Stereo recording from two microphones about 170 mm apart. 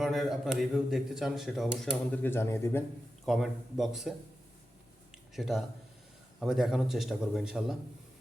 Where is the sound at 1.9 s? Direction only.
10° left (ahead or behind).